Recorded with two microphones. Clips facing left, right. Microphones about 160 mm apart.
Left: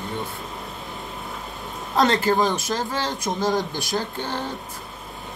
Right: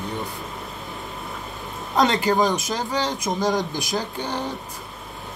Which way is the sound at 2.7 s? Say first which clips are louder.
Right 1 dB; 15° right (ahead or behind).